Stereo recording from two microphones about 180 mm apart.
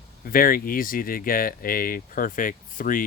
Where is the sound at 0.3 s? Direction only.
50° left (ahead or behind).